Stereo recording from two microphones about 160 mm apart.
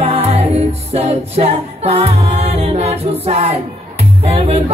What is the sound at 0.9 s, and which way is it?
A capella, 40° right (ahead or behind).